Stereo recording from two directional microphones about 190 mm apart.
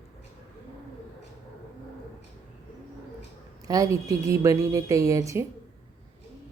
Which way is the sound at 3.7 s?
15° right (ahead or behind).